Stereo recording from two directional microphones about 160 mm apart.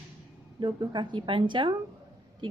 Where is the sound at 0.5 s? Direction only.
30° right (ahead or behind).